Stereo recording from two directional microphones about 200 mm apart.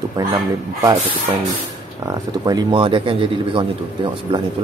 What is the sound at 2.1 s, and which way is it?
Speech, 20° right (ahead or behind).